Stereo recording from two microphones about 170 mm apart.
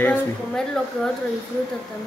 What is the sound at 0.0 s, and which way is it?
Speech, 5° left (ahead or behind).